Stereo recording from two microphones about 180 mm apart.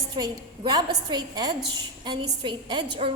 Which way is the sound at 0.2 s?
20° right (ahead or behind).